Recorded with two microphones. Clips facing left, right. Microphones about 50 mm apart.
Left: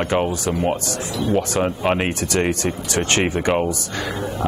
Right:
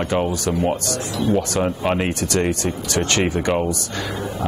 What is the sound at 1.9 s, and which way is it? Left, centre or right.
Speech, left.